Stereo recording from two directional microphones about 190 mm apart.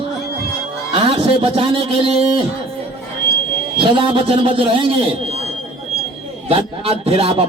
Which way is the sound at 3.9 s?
25° right (ahead or behind).